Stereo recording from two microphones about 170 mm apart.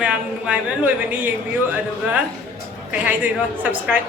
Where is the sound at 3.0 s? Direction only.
10° right (ahead or behind).